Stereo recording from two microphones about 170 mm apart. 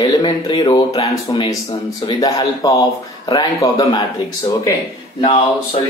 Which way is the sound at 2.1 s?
20° left (ahead or behind).